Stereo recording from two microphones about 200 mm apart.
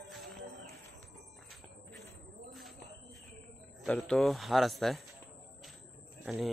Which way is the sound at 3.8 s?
Centre (ahead or behind).